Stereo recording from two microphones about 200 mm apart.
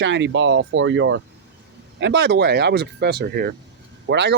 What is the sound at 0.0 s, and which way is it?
Speech, 65° right (ahead or behind).